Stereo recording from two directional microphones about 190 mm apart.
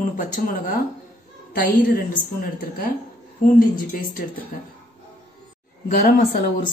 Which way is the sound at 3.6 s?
50° left (ahead or behind).